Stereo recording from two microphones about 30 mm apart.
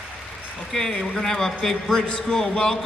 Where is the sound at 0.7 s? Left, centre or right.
Centre.